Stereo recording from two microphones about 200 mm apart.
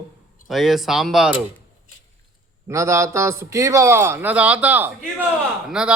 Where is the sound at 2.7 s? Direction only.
15° right (ahead or behind).